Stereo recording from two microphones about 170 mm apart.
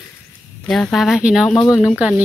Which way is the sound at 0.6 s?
5° left (ahead or behind).